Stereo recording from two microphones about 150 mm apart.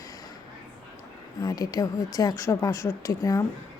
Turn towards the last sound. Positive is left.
turn(degrees=20)  # may be behind; listen again after turning